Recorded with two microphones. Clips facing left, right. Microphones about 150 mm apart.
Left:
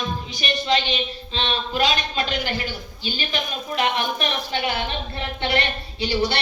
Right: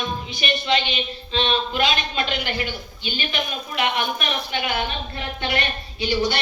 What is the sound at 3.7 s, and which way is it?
Speech, 35° left (ahead or behind).